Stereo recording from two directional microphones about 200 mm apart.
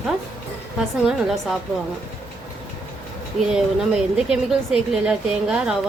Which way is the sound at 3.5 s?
5° right (ahead or behind).